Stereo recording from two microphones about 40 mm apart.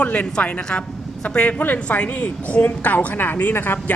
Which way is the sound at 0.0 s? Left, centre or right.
Left.